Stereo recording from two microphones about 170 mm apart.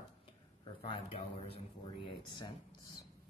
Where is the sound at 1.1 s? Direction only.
35° left (ahead or behind).